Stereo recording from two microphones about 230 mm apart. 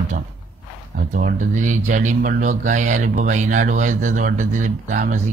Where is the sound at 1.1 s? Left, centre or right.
Right.